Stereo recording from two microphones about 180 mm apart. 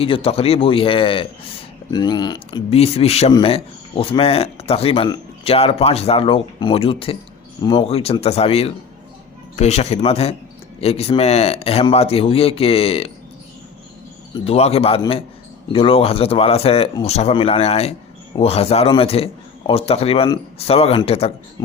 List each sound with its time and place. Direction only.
0.0 s speech: 30° left (ahead or behind)
14.3 s speech: 35° left (ahead or behind)